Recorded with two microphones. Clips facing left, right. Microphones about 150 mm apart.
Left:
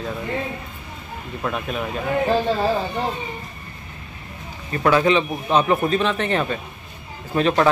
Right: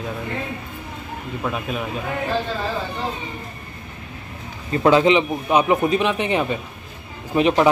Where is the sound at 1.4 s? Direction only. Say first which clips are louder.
Left 1 dB; centre (ahead or behind).